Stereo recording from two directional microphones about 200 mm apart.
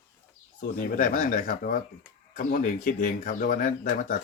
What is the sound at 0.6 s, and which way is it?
Speech, 45° left (ahead or behind).